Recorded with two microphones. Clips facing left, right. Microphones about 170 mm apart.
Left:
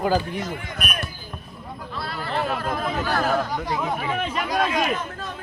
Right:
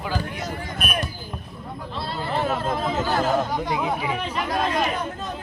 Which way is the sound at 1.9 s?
25° right (ahead or behind).